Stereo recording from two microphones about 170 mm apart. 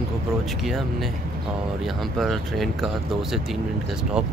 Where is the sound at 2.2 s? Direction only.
Centre (ahead or behind).